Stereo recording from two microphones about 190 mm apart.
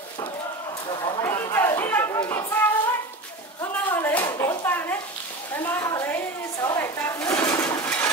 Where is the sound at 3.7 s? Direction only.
10° left (ahead or behind).